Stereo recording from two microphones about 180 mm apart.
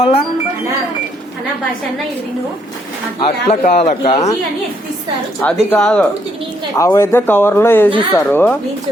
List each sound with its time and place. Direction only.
0.0 s a man's voice: 35° left (ahead or behind)
3.2 s a man's voice: 35° left (ahead or behind)
5.4 s speech: 5° left (ahead or behind)
6.7 s speech: 15° left (ahead or behind)